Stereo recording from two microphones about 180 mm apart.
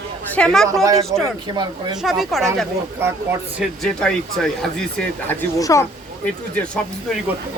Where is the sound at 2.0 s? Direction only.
Centre (ahead or behind).